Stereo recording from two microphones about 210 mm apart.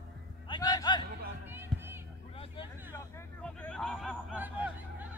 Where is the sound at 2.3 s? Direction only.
25° left (ahead or behind).